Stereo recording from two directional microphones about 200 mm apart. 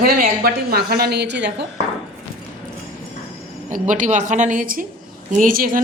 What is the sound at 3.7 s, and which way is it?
A woman's voice, 40° right (ahead or behind).